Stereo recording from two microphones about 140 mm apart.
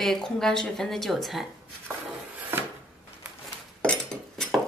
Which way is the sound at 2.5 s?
15° right (ahead or behind).